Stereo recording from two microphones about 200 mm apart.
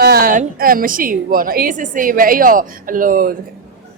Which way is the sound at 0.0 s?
50° right (ahead or behind).